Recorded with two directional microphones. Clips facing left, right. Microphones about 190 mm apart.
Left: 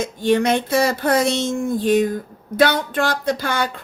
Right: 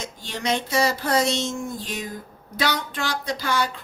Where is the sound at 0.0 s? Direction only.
55° left (ahead or behind).